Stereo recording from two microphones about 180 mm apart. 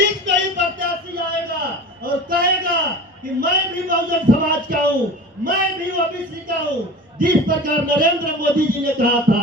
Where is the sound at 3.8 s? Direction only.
50° right (ahead or behind).